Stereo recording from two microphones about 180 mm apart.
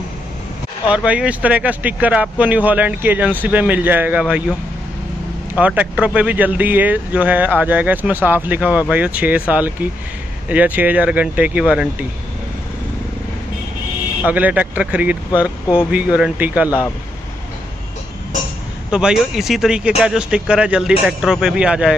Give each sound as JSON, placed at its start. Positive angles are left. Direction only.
{"t": 0.8, "sound": "speech", "side_deg": -5}
{"t": 14.2, "sound": "speech", "side_deg": -10}
{"t": 18.9, "sound": "speech", "side_deg": -5}